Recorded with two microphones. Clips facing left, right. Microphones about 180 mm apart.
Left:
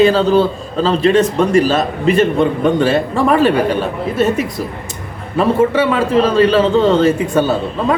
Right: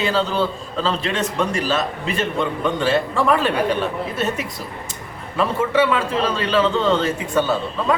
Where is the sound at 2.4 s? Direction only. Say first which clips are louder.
Left 8 dB; 45° left (ahead or behind).